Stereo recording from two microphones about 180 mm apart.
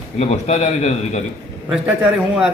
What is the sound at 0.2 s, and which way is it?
A man's voice, 40° left (ahead or behind).